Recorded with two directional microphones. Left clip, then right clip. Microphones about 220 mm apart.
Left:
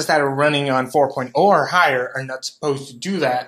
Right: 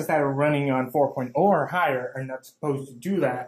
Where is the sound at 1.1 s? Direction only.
10° left (ahead or behind).